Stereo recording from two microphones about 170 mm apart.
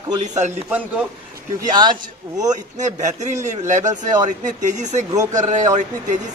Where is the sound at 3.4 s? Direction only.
45° right (ahead or behind).